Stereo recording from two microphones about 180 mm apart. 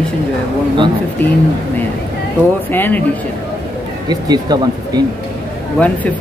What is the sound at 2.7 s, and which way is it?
Speech, 10° left (ahead or behind).